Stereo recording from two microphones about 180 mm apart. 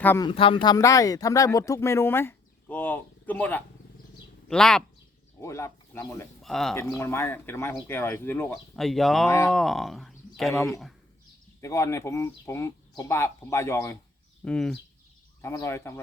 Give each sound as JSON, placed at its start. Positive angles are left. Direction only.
{"t": 0.2, "sound": "speech", "side_deg": 30}
{"t": 5.4, "sound": "speech", "side_deg": 15}
{"t": 6.4, "sound": "speech", "side_deg": 0}
{"t": 6.7, "sound": "speech", "side_deg": 15}
{"t": 8.7, "sound": "speech", "side_deg": 0}
{"t": 11.6, "sound": "speech", "side_deg": 15}
{"t": 14.4, "sound": "speech", "side_deg": 5}
{"t": 15.4, "sound": "speech", "side_deg": 15}